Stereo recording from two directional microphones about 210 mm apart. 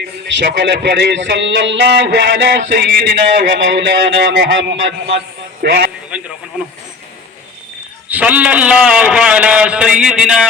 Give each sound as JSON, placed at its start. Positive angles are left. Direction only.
{"t": 0.3, "sound": "a man's voice", "side_deg": -55}
{"t": 6.1, "sound": "a sound", "side_deg": -5}
{"t": 8.1, "sound": "a man's voice", "side_deg": -5}